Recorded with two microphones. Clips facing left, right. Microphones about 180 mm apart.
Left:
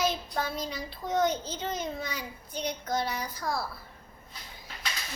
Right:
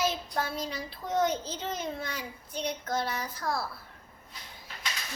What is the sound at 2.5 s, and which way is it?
Child singing, 30° right (ahead or behind).